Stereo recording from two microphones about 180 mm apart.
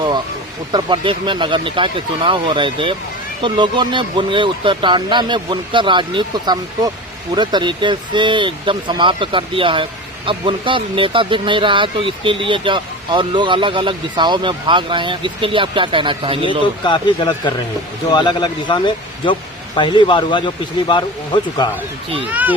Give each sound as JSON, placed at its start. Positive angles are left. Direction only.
{"t": 0.7, "sound": "speech", "side_deg": -25}
{"t": 16.8, "sound": "speech", "side_deg": 25}
{"t": 22.3, "sound": "a child's voice", "side_deg": -10}